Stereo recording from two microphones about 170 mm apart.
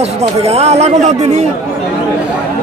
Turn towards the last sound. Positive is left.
turn(degrees=-40)  # may be behind; listen again after turning